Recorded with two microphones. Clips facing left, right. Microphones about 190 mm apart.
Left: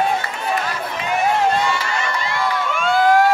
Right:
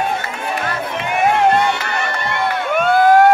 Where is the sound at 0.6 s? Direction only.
60° right (ahead or behind).